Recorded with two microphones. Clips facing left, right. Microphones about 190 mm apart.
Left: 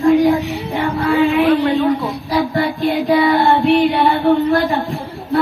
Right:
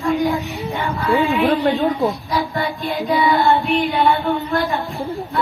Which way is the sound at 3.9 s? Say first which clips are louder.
Left 2 dB; 35° left (ahead or behind).